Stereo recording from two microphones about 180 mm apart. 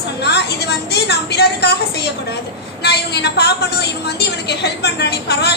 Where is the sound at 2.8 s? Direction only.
65° left (ahead or behind).